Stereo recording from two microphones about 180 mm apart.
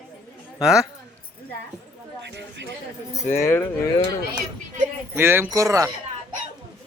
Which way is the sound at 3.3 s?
10° left (ahead or behind).